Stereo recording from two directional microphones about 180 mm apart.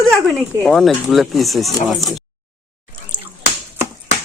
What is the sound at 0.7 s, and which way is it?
Speech, centre (ahead or behind).